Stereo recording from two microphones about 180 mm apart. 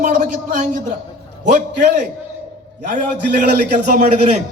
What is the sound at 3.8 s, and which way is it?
Speech, 40° right (ahead or behind).